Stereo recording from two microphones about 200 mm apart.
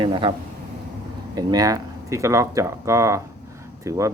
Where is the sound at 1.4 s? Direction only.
20° right (ahead or behind).